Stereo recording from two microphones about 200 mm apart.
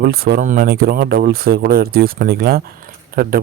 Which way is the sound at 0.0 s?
50° right (ahead or behind).